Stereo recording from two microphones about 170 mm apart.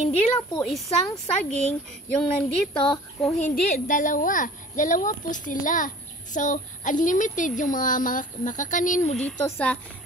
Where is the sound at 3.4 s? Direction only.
55° left (ahead or behind).